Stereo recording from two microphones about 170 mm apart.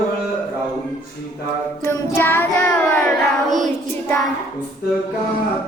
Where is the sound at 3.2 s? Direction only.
Centre (ahead or behind).